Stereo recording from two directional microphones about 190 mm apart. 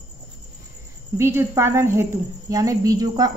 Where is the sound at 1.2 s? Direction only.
15° right (ahead or behind).